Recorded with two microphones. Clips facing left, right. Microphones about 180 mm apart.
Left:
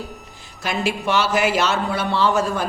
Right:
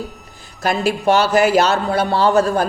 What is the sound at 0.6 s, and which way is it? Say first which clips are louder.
A man's voice: right 5 dB; 40° right (ahead or behind).